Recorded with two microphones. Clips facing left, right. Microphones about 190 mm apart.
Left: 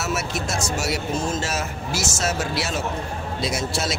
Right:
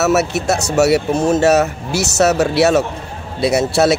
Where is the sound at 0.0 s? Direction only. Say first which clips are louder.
Right 11 dB; 70° right (ahead or behind).